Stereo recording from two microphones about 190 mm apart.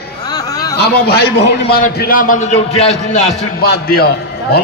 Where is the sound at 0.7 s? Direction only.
60° left (ahead or behind); by 3.3 s 35° left (ahead or behind).